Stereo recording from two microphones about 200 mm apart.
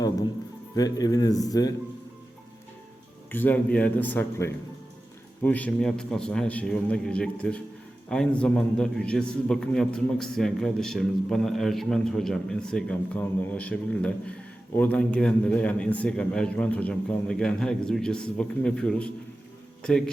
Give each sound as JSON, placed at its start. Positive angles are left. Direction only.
{"t": 0.8, "sound": "speech", "side_deg": 20}
{"t": 3.3, "sound": "a man's voice", "side_deg": 10}